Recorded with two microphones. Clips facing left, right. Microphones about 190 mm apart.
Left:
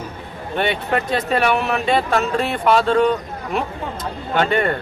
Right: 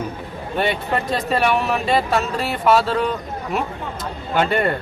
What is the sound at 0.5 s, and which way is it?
Speech, centre (ahead or behind).